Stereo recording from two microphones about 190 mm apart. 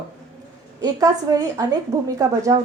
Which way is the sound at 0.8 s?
20° right (ahead or behind).